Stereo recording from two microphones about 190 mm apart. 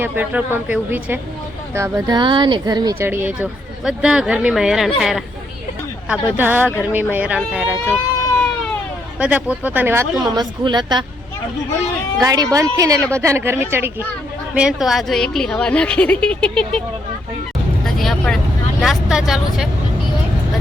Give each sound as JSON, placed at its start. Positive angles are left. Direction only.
{"t": 0.0, "sound": "a woman's voice", "side_deg": -10}
{"t": 6.3, "sound": "speech", "side_deg": -10}
{"t": 7.9, "sound": "a sound", "side_deg": 10}
{"t": 9.1, "sound": "speech", "side_deg": -5}
{"t": 12.2, "sound": "a woman's voice", "side_deg": -20}
{"t": 17.8, "sound": "vehicle", "side_deg": 0}
{"t": 18.8, "sound": "a woman's voice", "side_deg": 0}